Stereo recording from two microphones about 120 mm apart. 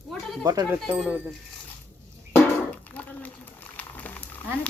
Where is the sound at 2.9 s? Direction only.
10° left (ahead or behind).